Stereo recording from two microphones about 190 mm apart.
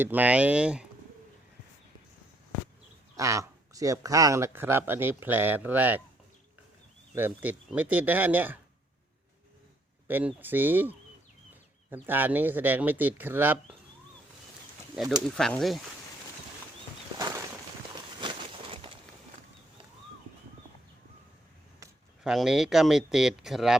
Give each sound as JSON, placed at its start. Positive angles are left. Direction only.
{"t": 0.0, "sound": "speech", "side_deg": -10}
{"t": 3.2, "sound": "speech", "side_deg": -15}
{"t": 7.2, "sound": "speech", "side_deg": -10}
{"t": 10.1, "sound": "speech", "side_deg": -10}
{"t": 15.4, "sound": "speech", "side_deg": 5}
{"t": 17.2, "sound": "a sound", "side_deg": -20}
{"t": 17.9, "sound": "walk", "side_deg": -25}
{"t": 22.2, "sound": "speech", "side_deg": 0}